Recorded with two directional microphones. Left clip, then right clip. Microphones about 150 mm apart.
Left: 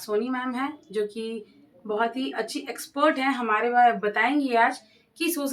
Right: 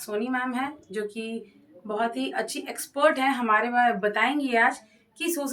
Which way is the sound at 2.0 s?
50° right (ahead or behind).